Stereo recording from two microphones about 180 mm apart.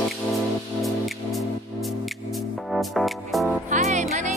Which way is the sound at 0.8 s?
Centre (ahead or behind).